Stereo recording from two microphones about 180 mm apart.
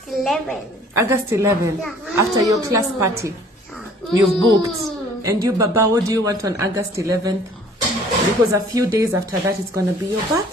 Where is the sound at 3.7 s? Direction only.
Centre (ahead or behind).